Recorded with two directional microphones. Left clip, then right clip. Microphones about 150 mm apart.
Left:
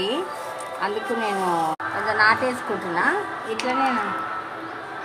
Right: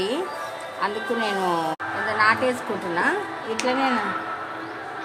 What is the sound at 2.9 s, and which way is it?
Speech, 20° right (ahead or behind).